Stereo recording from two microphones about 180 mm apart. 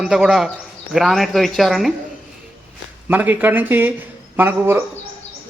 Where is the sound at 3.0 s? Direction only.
10° right (ahead or behind).